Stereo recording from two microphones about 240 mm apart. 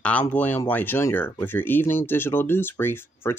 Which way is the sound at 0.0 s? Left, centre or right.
Centre.